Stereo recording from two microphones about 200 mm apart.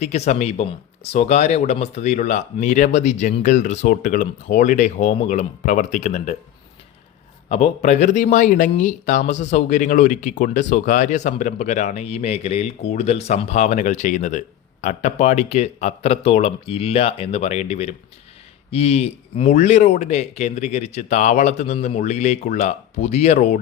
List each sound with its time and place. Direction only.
0.0 s speech: 35° left (ahead or behind)
7.4 s speech: 35° left (ahead or behind)